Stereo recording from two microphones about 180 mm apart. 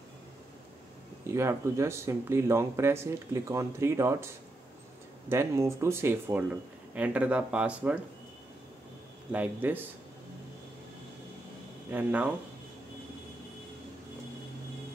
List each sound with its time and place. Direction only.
1.2 s speech: 15° right (ahead or behind)
5.3 s speech: 15° right (ahead or behind)
9.3 s speech: 10° right (ahead or behind)
11.9 s speech: 10° right (ahead or behind)